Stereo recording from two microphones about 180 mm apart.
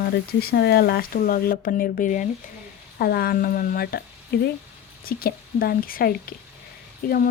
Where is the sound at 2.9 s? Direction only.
60° left (ahead or behind).